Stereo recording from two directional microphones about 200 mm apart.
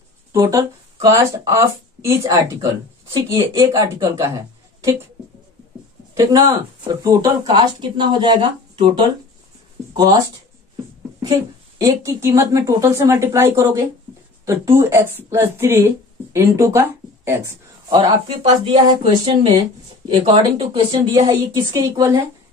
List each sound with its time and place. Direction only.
0.3 s speech: 15° right (ahead or behind)
6.1 s speech: 15° right (ahead or behind)
11.8 s speech: 15° right (ahead or behind)